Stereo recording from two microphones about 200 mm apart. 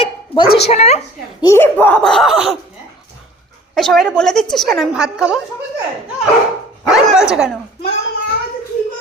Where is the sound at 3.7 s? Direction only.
Centre (ahead or behind).